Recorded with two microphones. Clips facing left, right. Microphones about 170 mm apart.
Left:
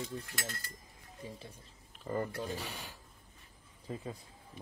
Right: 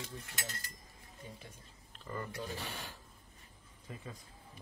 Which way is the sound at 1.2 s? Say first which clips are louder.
Left 5 dB; 30° left (ahead or behind).